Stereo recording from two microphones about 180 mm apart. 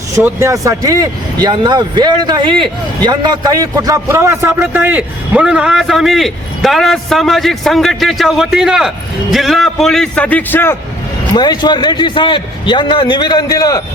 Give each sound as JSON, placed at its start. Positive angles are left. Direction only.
{"t": 0.1, "sound": "a man's voice", "side_deg": -15}
{"t": 11.3, "sound": "a man's voice", "side_deg": 25}